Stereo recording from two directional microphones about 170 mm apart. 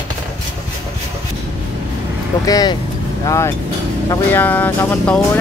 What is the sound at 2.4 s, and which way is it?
Speech, 20° left (ahead or behind).